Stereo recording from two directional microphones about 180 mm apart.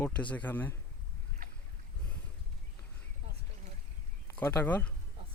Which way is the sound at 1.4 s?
50° right (ahead or behind).